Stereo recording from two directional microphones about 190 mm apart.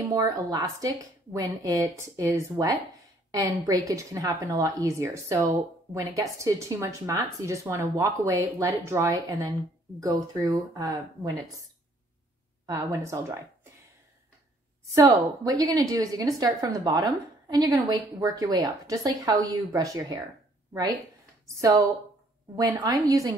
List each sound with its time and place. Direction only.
0.0 s a woman's voice: 20° right (ahead or behind)
12.6 s speech: 15° right (ahead or behind)
15.0 s a woman's voice: 20° right (ahead or behind)
21.5 s speech: 15° right (ahead or behind)